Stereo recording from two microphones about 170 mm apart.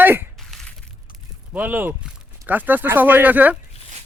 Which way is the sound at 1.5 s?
10° right (ahead or behind).